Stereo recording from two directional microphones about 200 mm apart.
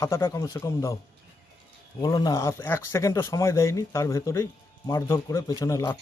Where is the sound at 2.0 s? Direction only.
20° left (ahead or behind).